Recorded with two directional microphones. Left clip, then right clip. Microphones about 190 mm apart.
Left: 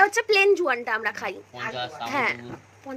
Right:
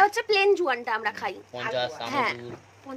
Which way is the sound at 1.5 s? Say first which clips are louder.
Right 3 dB; 65° right (ahead or behind).